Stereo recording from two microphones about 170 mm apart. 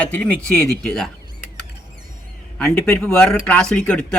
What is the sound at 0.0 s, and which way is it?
Speech, 10° left (ahead or behind).